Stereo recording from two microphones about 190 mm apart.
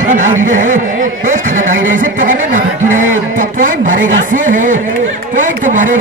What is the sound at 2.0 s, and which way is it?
A man's voice, 45° right (ahead or behind).